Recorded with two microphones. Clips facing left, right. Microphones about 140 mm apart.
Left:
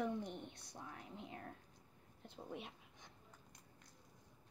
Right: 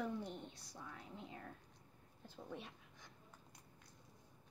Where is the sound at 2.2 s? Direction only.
20° left (ahead or behind).